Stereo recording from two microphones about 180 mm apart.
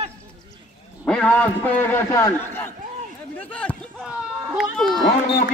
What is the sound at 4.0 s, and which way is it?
Children playing, 5° right (ahead or behind).